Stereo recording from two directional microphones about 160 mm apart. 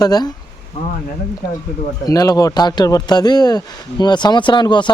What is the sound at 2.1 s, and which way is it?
Speech, 20° left (ahead or behind).